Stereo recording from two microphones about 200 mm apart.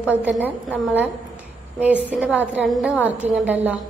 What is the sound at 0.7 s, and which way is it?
A woman's voice, 10° right (ahead or behind).